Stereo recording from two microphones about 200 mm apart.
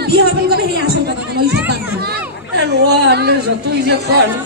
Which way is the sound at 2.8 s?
55° right (ahead or behind).